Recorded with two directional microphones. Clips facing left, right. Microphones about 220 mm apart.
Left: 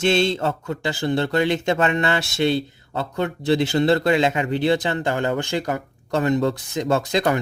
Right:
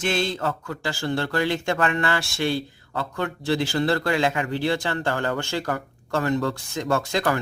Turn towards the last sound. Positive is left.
turn(degrees=20)  # may be behind; listen again after turning